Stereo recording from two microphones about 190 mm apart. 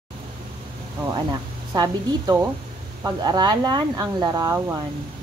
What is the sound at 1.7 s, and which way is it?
Speech, 20° right (ahead or behind).